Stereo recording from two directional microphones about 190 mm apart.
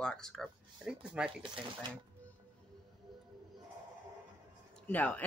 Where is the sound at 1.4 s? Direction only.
25° right (ahead or behind).